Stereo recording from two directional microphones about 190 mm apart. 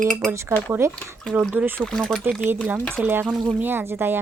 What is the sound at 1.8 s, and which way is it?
Speech, 5° left (ahead or behind).